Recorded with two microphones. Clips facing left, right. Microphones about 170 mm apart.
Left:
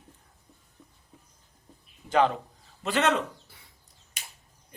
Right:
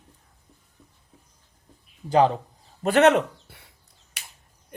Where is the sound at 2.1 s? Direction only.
35° right (ahead or behind).